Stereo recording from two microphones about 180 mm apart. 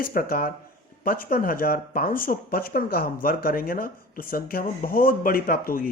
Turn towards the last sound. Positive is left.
turn(degrees=55)  # may be behind; listen again after turning